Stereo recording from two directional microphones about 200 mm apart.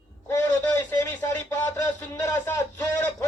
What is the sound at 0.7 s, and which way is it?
Radio, 10° left (ahead or behind).